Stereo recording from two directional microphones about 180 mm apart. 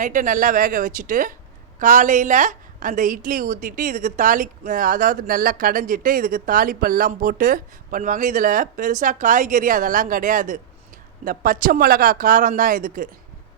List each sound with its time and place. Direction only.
0.0 s a woman's voice: 45° right (ahead or behind)